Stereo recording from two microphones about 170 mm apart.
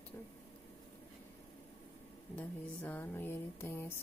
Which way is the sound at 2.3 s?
10° left (ahead or behind).